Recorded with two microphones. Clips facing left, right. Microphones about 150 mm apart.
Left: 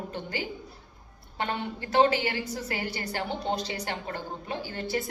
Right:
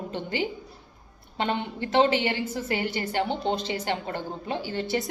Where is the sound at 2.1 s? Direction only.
25° right (ahead or behind).